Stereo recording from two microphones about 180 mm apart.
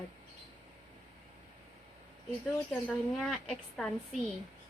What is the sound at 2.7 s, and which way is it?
Speech, centre (ahead or behind).